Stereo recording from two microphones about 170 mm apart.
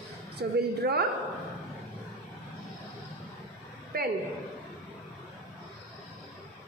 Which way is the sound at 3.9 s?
65° right (ahead or behind).